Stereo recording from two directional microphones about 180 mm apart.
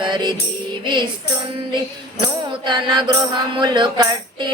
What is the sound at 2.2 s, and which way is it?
Mantra, 25° right (ahead or behind).